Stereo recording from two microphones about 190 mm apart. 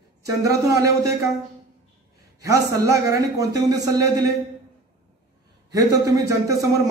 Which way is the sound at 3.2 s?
20° right (ahead or behind).